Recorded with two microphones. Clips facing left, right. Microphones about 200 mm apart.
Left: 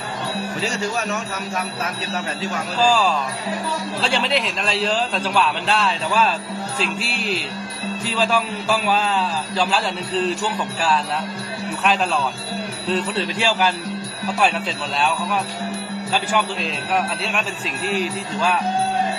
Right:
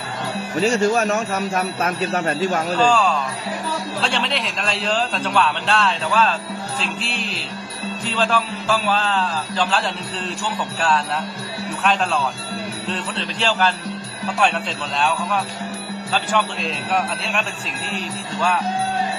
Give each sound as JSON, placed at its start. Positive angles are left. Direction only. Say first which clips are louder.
{"t": 0.7, "sound": "speech", "louder": "right 9 dB", "side_deg": -50}
{"t": 2.8, "sound": "a man's voice", "louder": "left 1 dB", "side_deg": 5}
{"t": 11.8, "sound": "a man's voice", "louder": "even", "side_deg": 0}